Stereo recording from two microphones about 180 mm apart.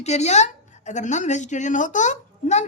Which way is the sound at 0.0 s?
40° left (ahead or behind).